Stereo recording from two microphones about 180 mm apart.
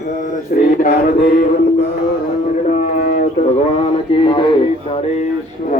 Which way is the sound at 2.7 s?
40° left (ahead or behind).